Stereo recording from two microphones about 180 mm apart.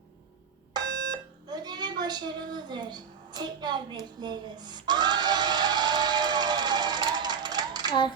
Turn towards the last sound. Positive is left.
turn(degrees=-25)  # may be behind; listen again after turning